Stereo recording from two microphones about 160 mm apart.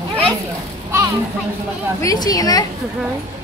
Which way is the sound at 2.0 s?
25° left (ahead or behind).